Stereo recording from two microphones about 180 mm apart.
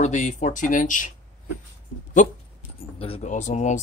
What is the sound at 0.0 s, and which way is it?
Speech, 40° left (ahead or behind).